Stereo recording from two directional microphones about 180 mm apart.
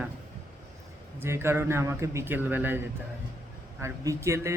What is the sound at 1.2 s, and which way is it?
A man's voice, 15° right (ahead or behind).